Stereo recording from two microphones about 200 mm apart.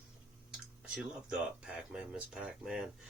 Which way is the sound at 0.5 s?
5° right (ahead or behind).